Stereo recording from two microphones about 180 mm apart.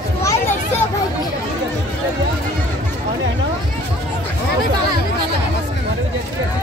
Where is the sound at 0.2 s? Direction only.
15° left (ahead or behind).